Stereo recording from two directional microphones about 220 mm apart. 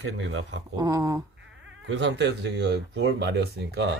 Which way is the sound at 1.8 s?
55° right (ahead or behind).